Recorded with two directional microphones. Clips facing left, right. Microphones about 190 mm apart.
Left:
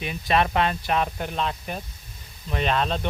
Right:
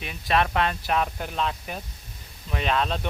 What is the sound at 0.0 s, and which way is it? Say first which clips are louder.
Speech: left 2 dB; centre (ahead or behind).